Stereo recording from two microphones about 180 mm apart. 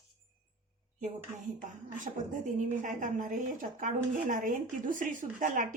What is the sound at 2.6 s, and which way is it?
A woman's voice, 45° right (ahead or behind).